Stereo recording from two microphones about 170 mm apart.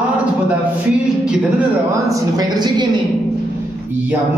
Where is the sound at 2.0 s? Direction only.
20° right (ahead or behind).